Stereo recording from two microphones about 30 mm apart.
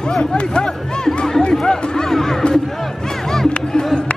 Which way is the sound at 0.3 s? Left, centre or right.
Left.